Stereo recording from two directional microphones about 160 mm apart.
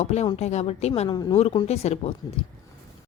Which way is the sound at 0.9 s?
30° left (ahead or behind).